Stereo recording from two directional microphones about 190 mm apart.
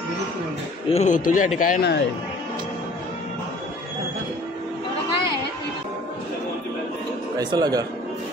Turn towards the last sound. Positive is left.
turn(degrees=-20)  # may be behind; listen again after turning